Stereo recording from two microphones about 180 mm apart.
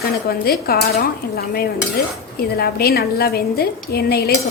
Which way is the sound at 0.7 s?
55° left (ahead or behind).